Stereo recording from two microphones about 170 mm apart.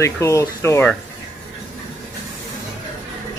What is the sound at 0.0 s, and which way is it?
Speech, 15° left (ahead or behind).